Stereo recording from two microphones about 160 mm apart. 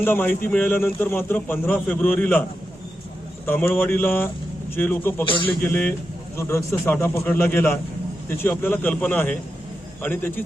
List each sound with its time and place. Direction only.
0.0 s a man's voice: 10° left (ahead or behind)
3.4 s a man's voice: 10° left (ahead or behind)
5.2 s speech: 30° left (ahead or behind)
5.6 s a man's voice: 10° left (ahead or behind)